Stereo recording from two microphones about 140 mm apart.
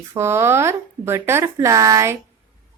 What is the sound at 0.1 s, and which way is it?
A woman's voice, 20° right (ahead or behind).